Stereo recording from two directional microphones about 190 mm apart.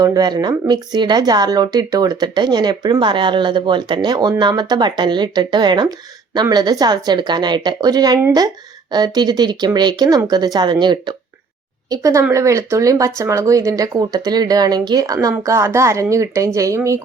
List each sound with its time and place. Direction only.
0.0 s speech: 20° right (ahead or behind)